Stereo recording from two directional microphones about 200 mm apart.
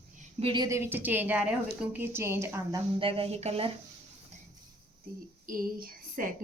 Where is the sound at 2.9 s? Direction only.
25° right (ahead or behind).